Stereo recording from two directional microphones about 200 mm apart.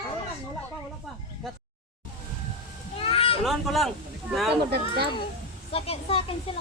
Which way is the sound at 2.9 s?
30° left (ahead or behind).